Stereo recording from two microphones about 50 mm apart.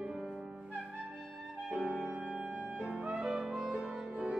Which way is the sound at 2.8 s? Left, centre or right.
Centre.